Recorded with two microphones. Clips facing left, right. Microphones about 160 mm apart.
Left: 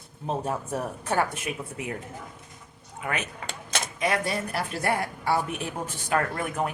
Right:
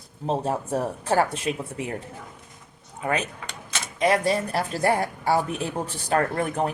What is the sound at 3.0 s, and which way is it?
A woman's voice, 30° right (ahead or behind).